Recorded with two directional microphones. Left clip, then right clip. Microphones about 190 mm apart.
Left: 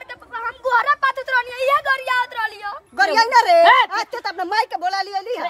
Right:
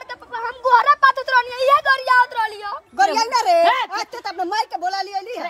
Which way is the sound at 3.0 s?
40° left (ahead or behind).